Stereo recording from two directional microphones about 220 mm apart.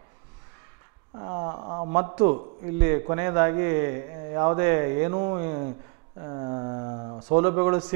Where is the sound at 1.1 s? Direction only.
25° right (ahead or behind).